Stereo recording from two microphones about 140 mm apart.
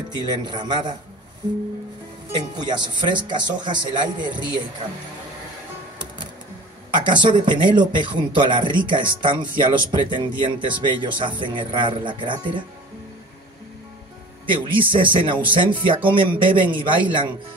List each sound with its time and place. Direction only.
0.1 s speech: 30° right (ahead or behind)
2.5 s speech: 30° right (ahead or behind)
7.0 s speech: 35° right (ahead or behind)
14.4 s speech: 35° right (ahead or behind)